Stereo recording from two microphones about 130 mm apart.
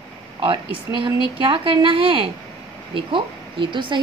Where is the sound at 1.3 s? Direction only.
40° right (ahead or behind).